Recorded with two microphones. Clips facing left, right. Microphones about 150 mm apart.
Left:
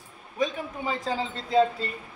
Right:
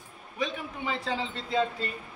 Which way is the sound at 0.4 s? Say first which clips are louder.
Left 4 dB; 40° left (ahead or behind).